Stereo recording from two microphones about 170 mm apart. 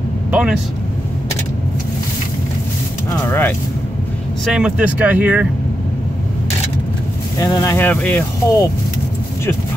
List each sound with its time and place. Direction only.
0.3 s speech: 5° right (ahead or behind)
3.1 s speech: 15° left (ahead or behind)
4.5 s speech: 5° right (ahead or behind)
7.3 s speech: 20° left (ahead or behind)